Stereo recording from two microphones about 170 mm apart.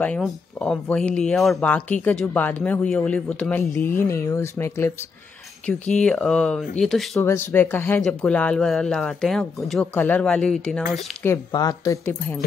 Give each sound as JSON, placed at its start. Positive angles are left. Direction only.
{"t": 0.0, "sound": "speech", "side_deg": 5}
{"t": 5.9, "sound": "speech", "side_deg": 5}
{"t": 7.2, "sound": "speech", "side_deg": 15}
{"t": 11.2, "sound": "speech", "side_deg": 20}